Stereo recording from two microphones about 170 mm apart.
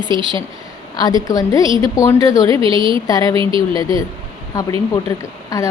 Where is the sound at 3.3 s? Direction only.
30° right (ahead or behind).